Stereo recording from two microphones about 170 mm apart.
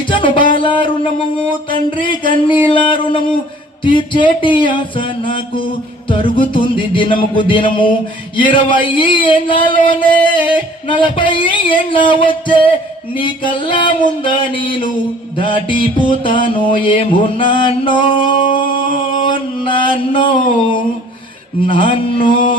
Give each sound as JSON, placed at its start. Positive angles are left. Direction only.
{"t": 0.1, "sound": "music", "side_deg": 30}
{"t": 3.8, "sound": "music", "side_deg": 30}
{"t": 15.4, "sound": "mantra", "side_deg": 30}